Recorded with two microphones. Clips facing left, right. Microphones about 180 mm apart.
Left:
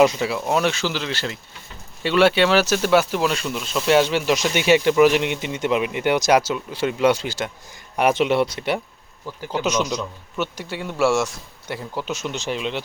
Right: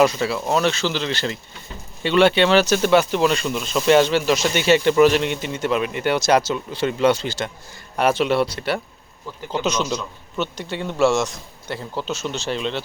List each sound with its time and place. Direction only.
0.0 s speech: 15° left (ahead or behind)